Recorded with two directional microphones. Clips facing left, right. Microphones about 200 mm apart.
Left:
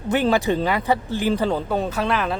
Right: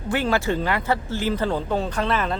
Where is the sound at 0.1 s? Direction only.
15° left (ahead or behind).